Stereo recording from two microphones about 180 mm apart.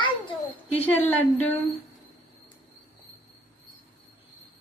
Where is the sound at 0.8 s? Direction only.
10° left (ahead or behind).